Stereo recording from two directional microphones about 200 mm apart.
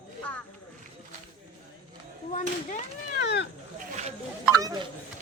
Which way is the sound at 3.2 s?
60° left (ahead or behind).